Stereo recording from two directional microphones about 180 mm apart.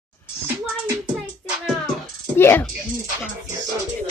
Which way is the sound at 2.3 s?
15° left (ahead or behind).